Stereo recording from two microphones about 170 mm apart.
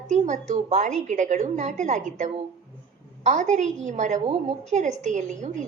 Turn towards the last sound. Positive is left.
turn(degrees=-45)  # may be behind; listen again after turning